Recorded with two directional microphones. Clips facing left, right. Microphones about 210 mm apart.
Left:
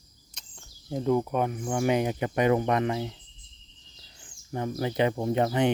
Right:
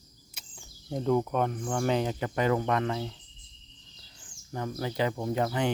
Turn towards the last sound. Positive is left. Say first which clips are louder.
# left 4 dB
turn(degrees=20)  # may be behind; listen again after turning